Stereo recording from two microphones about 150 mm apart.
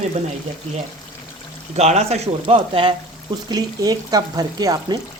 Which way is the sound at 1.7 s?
45° right (ahead or behind).